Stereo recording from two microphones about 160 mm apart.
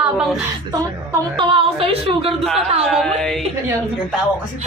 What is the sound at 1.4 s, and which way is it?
Speech, 35° right (ahead or behind).